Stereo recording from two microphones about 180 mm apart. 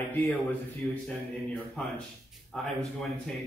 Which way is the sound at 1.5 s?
Centre (ahead or behind).